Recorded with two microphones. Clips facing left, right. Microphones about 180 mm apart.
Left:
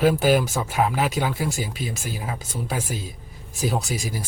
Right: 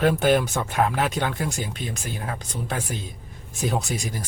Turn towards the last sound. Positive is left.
turn(degrees=5)  # may be behind; listen again after turning